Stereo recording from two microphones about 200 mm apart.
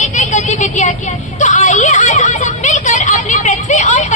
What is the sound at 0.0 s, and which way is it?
Vehicle, 35° left (ahead or behind).